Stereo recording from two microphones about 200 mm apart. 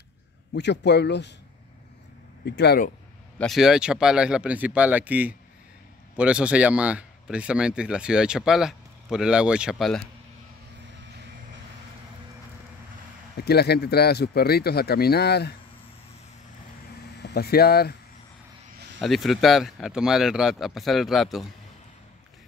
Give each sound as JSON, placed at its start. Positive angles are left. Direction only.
{"t": 0.5, "sound": "a man's voice", "side_deg": 60}
{"t": 2.4, "sound": "a man's voice", "side_deg": 55}
{"t": 3.3, "sound": "speech", "side_deg": 0}
{"t": 13.4, "sound": "speech", "side_deg": 55}
{"t": 17.2, "sound": "speech", "side_deg": 55}
{"t": 18.9, "sound": "speech", "side_deg": 0}